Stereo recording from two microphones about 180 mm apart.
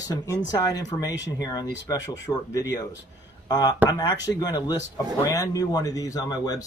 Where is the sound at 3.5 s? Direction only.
20° left (ahead or behind).